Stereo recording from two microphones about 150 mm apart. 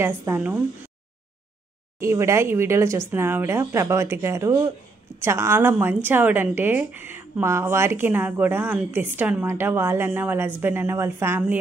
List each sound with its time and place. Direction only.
0.0 s a woman's voice: 15° right (ahead or behind)
2.0 s a woman's voice: 20° right (ahead or behind)